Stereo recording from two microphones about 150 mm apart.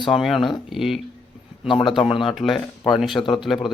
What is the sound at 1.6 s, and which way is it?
Speech, 35° left (ahead or behind).